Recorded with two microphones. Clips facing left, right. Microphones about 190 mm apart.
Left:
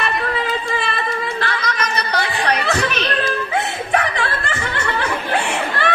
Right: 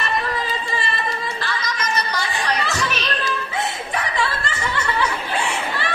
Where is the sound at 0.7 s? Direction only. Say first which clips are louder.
Left 3 dB; 60° left (ahead or behind).